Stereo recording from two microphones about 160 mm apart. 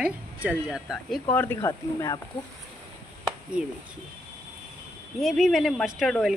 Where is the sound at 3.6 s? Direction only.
5° right (ahead or behind).